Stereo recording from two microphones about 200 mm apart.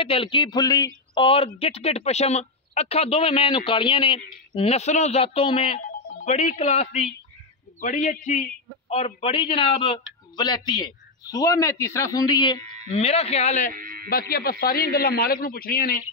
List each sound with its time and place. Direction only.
0.0 s a man's voice: 25° left (ahead or behind)
13.7 s a sound: 45° right (ahead or behind)
14.0 s a man's voice: 50° left (ahead or behind)